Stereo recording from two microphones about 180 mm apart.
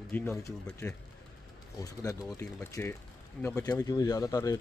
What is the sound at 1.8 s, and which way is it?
Speech, 20° left (ahead or behind).